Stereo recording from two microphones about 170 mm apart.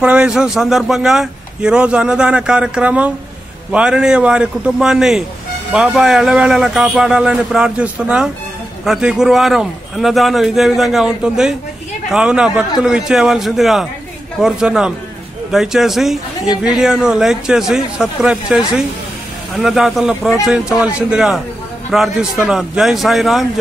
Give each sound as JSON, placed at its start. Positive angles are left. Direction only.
{"t": 0.0, "sound": "speech", "side_deg": -5}